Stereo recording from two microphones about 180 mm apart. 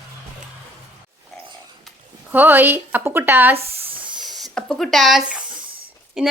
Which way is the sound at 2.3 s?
10° right (ahead or behind).